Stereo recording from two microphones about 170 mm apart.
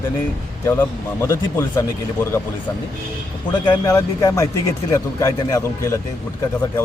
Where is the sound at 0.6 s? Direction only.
15° left (ahead or behind).